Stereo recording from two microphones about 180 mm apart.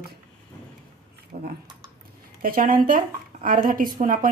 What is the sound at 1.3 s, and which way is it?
Speech, 50° right (ahead or behind).